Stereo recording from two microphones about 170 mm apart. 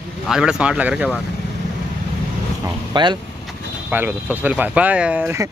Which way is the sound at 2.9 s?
25° right (ahead or behind).